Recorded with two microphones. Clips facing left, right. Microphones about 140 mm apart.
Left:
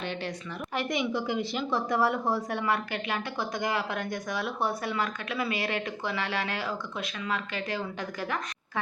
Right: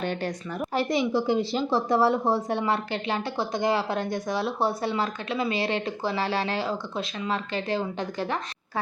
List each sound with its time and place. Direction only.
0.0 s speech: 45° right (ahead or behind); by 8.8 s 30° right (ahead or behind)